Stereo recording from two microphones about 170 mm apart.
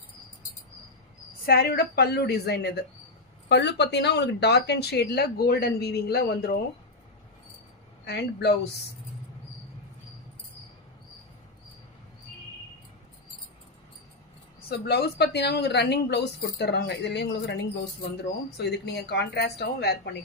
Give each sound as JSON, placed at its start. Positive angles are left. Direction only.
{"t": 1.5, "sound": "speech", "side_deg": 65}
{"t": 3.5, "sound": "speech", "side_deg": 90}
{"t": 8.0, "sound": "speech", "side_deg": 75}
{"t": 14.7, "sound": "a woman's voice", "side_deg": 65}